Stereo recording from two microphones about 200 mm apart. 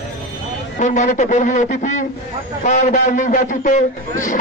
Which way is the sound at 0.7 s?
40° left (ahead or behind).